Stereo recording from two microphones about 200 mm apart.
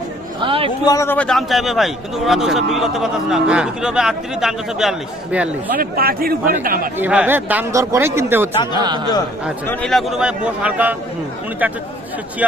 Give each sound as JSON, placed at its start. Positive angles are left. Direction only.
{"t": 0.3, "sound": "chatter", "side_deg": -25}
{"t": 0.9, "sound": "a man's voice", "side_deg": 15}
{"t": 5.7, "sound": "a man's voice", "side_deg": -45}
{"t": 6.9, "sound": "a man's voice", "side_deg": -10}
{"t": 9.6, "sound": "a man's voice", "side_deg": 5}